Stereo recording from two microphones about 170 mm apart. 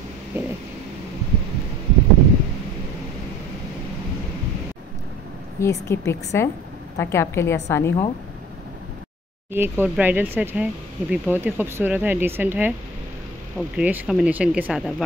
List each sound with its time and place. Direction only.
0.3 s speech: 15° right (ahead or behind)
5.6 s a woman's voice: 15° left (ahead or behind)
9.5 s speech: 10° right (ahead or behind)